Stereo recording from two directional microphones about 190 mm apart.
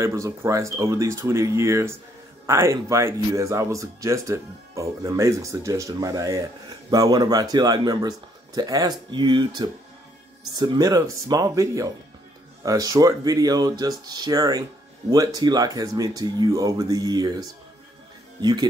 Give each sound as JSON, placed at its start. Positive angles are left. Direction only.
{"t": 0.0, "sound": "speech", "side_deg": -15}